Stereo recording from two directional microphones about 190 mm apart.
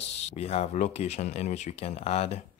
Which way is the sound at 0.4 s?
35° left (ahead or behind).